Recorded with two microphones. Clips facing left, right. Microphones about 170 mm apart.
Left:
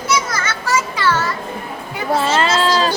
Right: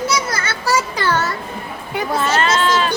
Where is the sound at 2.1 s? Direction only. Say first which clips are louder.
Left 2 dB; 30° left (ahead or behind).